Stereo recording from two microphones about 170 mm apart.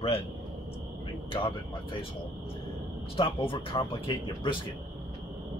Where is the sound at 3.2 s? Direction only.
30° left (ahead or behind).